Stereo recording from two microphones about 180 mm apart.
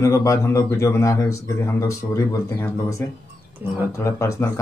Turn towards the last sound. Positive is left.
turn(degrees=15)  # may be behind; listen again after turning